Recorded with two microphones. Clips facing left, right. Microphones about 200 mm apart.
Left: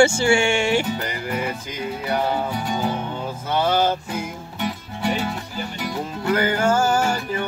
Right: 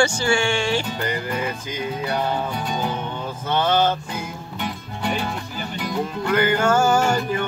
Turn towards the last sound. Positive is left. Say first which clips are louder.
# right 2 dB
turn(degrees=5)  # may be behind; listen again after turning